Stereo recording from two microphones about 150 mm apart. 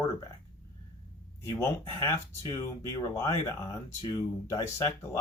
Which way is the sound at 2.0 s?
20° left (ahead or behind).